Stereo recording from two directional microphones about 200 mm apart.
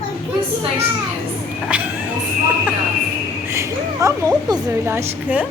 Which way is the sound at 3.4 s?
15° right (ahead or behind).